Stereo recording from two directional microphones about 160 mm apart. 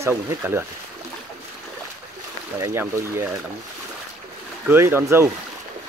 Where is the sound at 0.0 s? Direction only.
15° right (ahead or behind).